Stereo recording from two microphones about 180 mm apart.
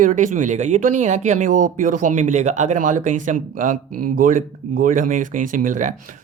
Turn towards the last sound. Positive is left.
turn(degrees=-45)  # may be behind; listen again after turning